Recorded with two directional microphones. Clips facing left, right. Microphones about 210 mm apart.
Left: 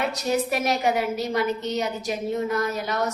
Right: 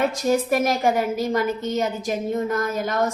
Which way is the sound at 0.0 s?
45° right (ahead or behind).